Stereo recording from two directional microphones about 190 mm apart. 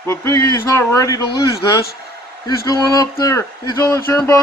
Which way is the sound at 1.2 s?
55° left (ahead or behind).